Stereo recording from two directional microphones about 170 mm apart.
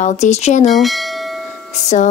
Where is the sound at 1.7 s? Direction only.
40° left (ahead or behind).